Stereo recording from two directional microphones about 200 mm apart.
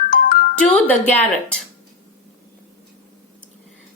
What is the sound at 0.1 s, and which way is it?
Music, 45° left (ahead or behind).